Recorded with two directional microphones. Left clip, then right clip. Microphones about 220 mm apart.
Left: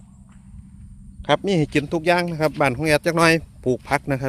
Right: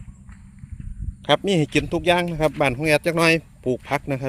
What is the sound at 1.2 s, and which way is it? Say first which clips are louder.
Speech: even; centre (ahead or behind).